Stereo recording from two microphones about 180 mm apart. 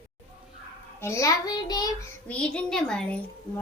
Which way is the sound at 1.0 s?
15° left (ahead or behind).